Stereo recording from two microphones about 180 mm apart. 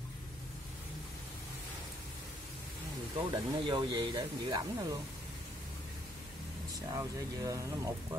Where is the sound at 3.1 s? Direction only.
25° right (ahead or behind).